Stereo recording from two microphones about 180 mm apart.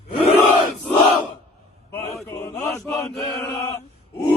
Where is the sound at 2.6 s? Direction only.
15° left (ahead or behind).